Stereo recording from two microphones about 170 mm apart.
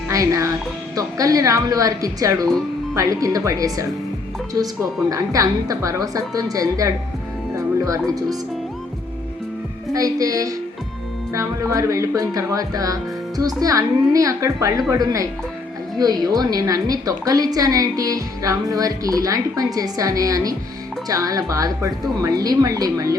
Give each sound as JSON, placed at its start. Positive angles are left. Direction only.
{"t": 0.1, "sound": "a woman's voice", "side_deg": -20}
{"t": 9.9, "sound": "a woman's voice", "side_deg": -20}